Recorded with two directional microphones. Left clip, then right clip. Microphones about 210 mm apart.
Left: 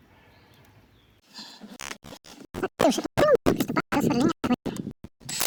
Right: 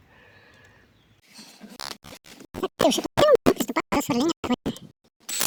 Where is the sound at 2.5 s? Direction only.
Centre (ahead or behind).